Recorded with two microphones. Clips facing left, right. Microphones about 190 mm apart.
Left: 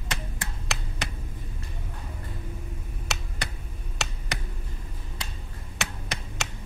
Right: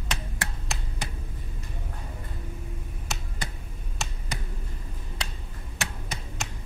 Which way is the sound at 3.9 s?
75° left (ahead or behind).